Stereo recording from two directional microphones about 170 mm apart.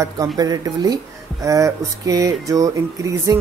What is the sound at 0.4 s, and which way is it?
Speech, 25° right (ahead or behind).